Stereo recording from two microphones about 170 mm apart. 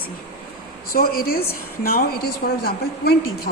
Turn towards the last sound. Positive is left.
turn(degrees=65)  # may be behind; listen again after turning